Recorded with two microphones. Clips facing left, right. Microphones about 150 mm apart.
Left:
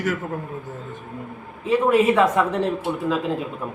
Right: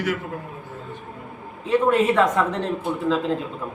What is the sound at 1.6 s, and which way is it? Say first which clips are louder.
Speech: left 1 dB; 10° left (ahead or behind).